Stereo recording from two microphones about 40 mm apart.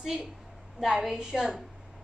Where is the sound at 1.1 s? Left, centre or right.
Centre.